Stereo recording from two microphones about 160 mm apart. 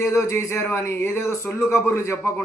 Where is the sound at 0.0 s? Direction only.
15° left (ahead or behind).